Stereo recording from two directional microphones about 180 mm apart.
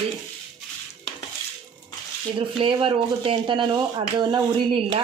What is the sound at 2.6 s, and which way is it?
Speech, 30° right (ahead or behind).